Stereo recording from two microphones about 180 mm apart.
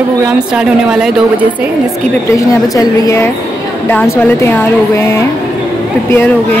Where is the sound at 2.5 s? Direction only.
20° left (ahead or behind).